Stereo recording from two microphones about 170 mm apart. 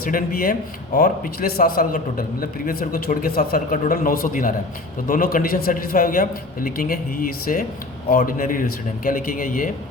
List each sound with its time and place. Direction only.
0.0 s a man's voice: 55° left (ahead or behind)